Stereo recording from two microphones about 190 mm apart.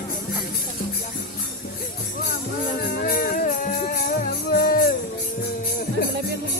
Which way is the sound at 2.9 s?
45° left (ahead or behind).